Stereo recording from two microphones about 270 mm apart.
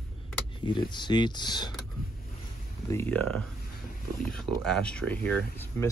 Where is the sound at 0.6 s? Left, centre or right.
Centre.